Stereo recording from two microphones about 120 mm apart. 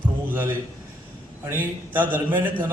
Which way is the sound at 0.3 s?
15° right (ahead or behind).